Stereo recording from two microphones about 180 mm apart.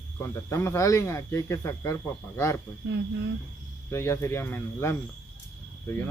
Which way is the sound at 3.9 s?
15° left (ahead or behind).